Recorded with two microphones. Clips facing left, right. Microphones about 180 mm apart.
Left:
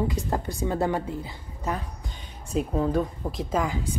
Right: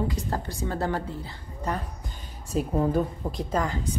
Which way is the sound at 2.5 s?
5° right (ahead or behind).